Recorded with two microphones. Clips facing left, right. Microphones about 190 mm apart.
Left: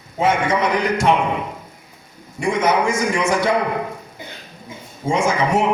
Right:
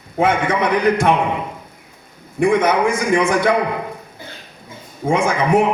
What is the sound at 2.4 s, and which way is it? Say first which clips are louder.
A man's voice: right 3 dB; 55° right (ahead or behind).